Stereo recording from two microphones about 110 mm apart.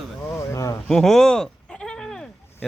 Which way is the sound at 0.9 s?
5° left (ahead or behind).